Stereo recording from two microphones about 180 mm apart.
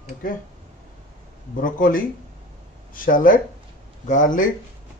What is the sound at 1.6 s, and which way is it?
Speech, 50° left (ahead or behind).